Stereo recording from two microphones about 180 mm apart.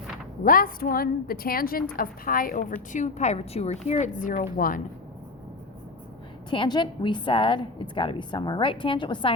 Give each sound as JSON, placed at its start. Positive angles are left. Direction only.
{"t": 0.4, "sound": "a woman's voice", "side_deg": 50}
{"t": 6.5, "sound": "a woman's voice", "side_deg": 25}